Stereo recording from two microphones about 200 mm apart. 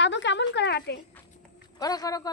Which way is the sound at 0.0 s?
60° left (ahead or behind).